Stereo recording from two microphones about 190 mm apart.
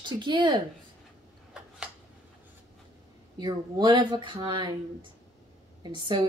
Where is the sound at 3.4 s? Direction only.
20° right (ahead or behind).